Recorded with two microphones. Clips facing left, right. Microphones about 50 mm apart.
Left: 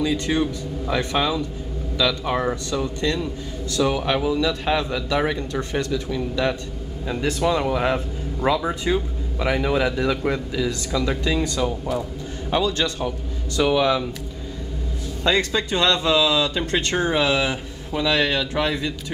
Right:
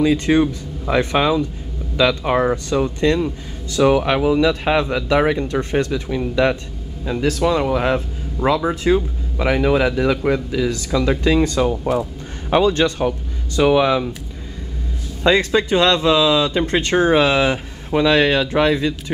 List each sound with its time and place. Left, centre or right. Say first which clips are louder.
0.0 s speech: right 6 dB; right
7.4 s speech: right 2 dB; centre
11.2 s a man's voice: right 6 dB; right
15.2 s speech: right 6 dB; centre